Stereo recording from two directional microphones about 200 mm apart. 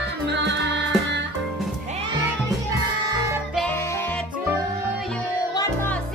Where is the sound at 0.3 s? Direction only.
60° right (ahead or behind).